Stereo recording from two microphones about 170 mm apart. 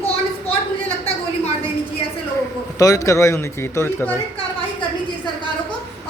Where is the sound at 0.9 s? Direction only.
35° left (ahead or behind).